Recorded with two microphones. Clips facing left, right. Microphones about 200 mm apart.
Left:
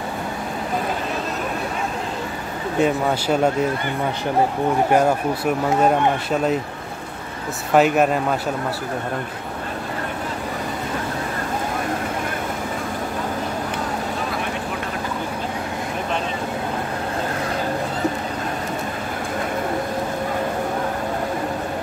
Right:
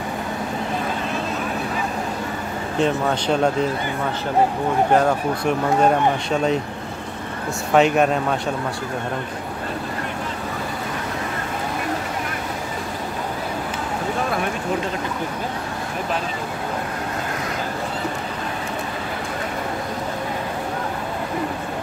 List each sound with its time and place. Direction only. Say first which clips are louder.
2.8 s speech: left 1 dB; 5° left (ahead or behind)
4.9 s speech: even; 5° left (ahead or behind)
7.7 s speech: even; 5° left (ahead or behind)